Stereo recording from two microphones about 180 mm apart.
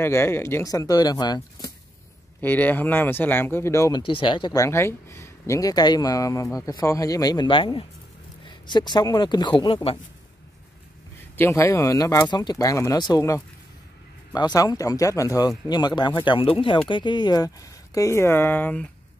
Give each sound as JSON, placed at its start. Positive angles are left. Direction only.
{"t": 0.0, "sound": "speech", "side_deg": 15}
{"t": 2.4, "sound": "speech", "side_deg": 10}
{"t": 4.0, "sound": "speech", "side_deg": 30}
{"t": 11.3, "sound": "speech", "side_deg": 15}